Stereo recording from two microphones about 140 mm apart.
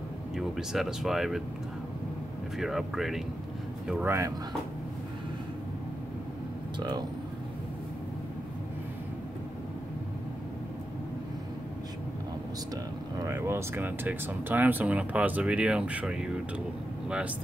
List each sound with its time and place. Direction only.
0.4 s speech: 5° right (ahead or behind)
2.6 s speech: 5° right (ahead or behind)
6.8 s speech: 30° right (ahead or behind)
13.2 s speech: 20° right (ahead or behind)